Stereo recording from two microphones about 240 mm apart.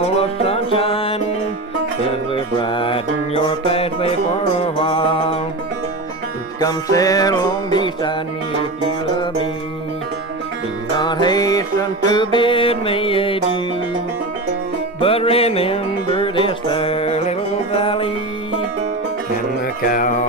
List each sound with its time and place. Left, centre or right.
0.2 s music: left
2.3 s music: left
6.6 s music: centre
11.0 s music: centre
15.0 s music: left
19.9 s music: left